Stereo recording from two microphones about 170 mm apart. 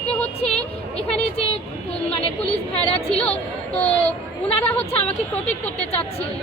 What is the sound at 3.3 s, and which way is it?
Speech, 40° left (ahead or behind).